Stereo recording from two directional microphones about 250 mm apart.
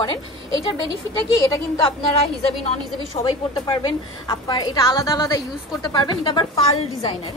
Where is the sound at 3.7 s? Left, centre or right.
Centre.